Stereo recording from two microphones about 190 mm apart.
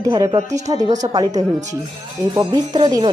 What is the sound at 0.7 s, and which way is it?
A woman's voice, 20° right (ahead or behind).